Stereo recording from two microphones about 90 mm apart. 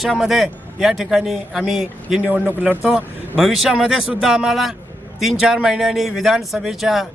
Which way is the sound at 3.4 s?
5° right (ahead or behind).